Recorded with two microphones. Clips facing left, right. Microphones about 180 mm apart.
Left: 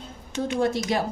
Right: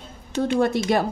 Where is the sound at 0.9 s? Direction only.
60° right (ahead or behind).